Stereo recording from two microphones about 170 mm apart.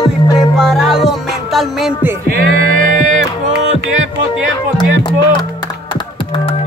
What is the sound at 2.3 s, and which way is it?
Music, 60° right (ahead or behind).